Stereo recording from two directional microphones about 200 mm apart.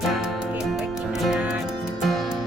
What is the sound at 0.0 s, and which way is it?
Music, centre (ahead or behind).